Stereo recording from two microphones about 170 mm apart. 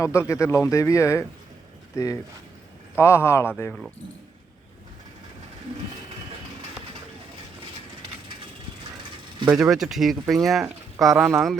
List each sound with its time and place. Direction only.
0.0 s speech: 15° left (ahead or behind)
9.6 s speech: 5° right (ahead or behind)